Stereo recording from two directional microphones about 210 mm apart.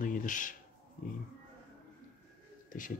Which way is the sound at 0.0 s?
40° left (ahead or behind).